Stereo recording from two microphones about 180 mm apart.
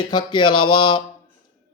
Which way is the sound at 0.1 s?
25° left (ahead or behind).